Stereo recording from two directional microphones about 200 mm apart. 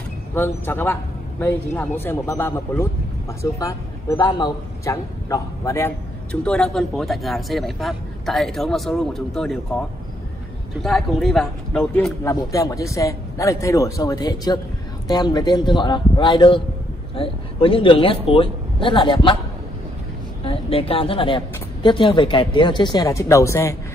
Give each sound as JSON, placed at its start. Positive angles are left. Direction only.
{"t": 0.3, "sound": "a man's voice", "side_deg": 10}
{"t": 12.3, "sound": "a man's voice", "side_deg": 15}
{"t": 20.4, "sound": "a woman's voice", "side_deg": 30}